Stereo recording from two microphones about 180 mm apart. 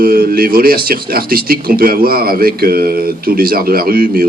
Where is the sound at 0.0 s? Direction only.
55° right (ahead or behind).